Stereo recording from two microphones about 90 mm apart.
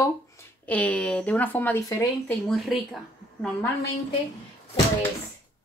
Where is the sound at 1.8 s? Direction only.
35° left (ahead or behind).